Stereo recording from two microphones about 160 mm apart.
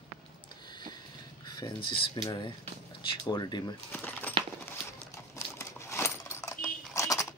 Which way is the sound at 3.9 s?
10° left (ahead or behind).